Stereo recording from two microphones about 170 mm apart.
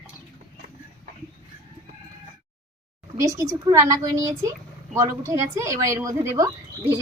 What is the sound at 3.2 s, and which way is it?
A woman's voice, 20° right (ahead or behind).